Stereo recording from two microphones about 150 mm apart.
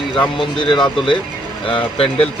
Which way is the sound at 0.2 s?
30° left (ahead or behind).